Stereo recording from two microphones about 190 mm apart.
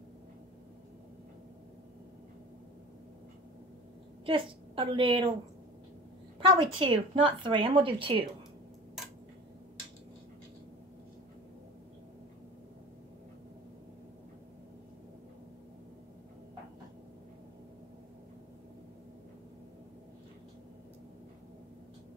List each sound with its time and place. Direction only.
4.3 s a woman's voice: 25° right (ahead or behind)
6.4 s a woman's voice: 25° right (ahead or behind)